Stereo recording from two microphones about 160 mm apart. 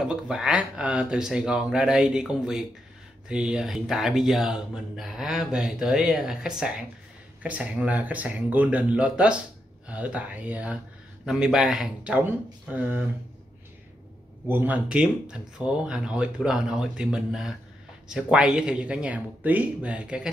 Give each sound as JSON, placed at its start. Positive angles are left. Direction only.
{"t": 0.0, "sound": "speech", "side_deg": -5}
{"t": 14.5, "sound": "speech", "side_deg": -10}